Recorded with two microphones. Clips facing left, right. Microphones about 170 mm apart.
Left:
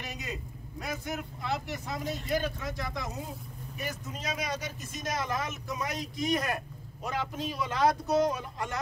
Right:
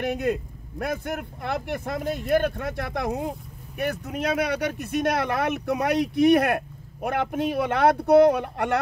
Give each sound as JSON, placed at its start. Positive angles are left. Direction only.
{"t": 0.0, "sound": "speech", "side_deg": -55}